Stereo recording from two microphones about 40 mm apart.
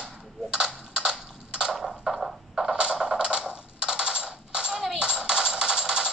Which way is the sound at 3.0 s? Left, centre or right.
Right.